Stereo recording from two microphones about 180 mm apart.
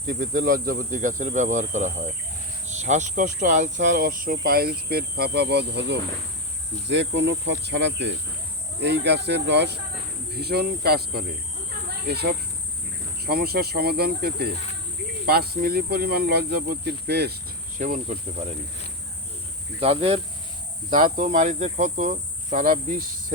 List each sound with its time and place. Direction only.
0.1 s cricket: 50° right (ahead or behind); by 6.0 s 70° right (ahead or behind)
6.8 s cricket: 80° right
10.3 s speech: 60° right (ahead or behind)
17.7 s cricket: 50° right (ahead or behind)
19.8 s speech: 35° right (ahead or behind)
20.9 s cricket: 50° right (ahead or behind)